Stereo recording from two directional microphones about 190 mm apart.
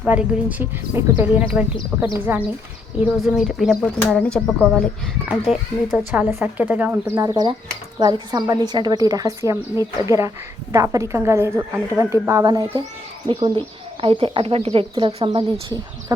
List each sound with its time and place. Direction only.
0.0 s a woman's voice: 5° right (ahead or behind)